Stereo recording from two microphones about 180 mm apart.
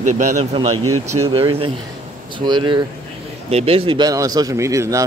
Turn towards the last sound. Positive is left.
turn(degrees=-20)  # may be behind; listen again after turning